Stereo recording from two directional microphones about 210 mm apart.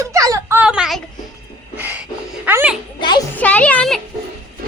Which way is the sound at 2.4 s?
10° right (ahead or behind).